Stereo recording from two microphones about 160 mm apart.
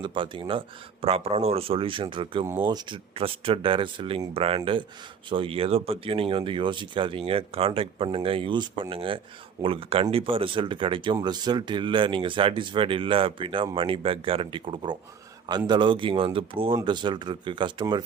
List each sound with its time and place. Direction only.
0.0 s speech: 30° right (ahead or behind)